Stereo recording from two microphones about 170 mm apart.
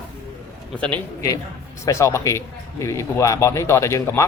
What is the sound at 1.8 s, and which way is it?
Speech, 15° left (ahead or behind).